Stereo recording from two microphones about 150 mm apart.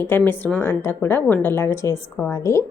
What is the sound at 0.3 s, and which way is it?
A woman's voice, 15° left (ahead or behind).